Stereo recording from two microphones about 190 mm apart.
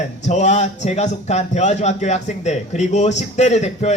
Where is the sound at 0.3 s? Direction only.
35° left (ahead or behind).